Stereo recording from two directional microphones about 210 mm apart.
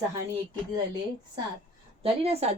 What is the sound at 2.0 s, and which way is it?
Speech, 30° right (ahead or behind).